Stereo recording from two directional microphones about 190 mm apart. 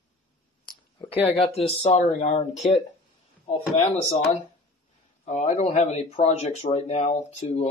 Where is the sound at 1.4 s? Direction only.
30° left (ahead or behind).